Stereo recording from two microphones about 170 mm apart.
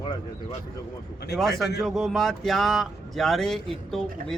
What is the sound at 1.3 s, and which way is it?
Speech, centre (ahead or behind).